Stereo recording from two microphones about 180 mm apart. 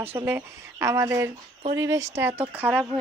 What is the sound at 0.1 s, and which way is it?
Speech, 10° right (ahead or behind).